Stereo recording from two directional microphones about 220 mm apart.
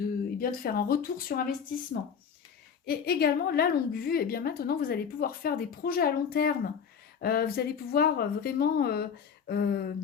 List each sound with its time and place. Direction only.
0.3 s a woman's voice: 40° left (ahead or behind)